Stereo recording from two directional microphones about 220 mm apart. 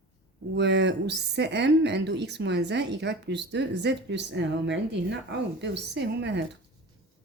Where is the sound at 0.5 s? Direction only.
50° right (ahead or behind).